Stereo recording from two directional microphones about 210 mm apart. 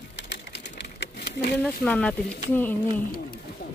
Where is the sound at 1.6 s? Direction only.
5° left (ahead or behind).